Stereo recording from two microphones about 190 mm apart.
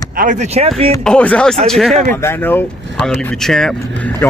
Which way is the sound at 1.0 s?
5° left (ahead or behind).